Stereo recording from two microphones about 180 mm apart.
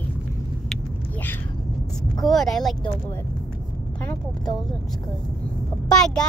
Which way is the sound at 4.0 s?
5° left (ahead or behind).